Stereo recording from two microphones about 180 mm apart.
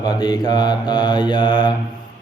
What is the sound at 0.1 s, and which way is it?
Mantra, 20° left (ahead or behind).